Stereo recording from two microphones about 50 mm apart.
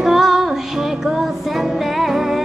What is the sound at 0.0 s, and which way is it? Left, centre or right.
Music, centre.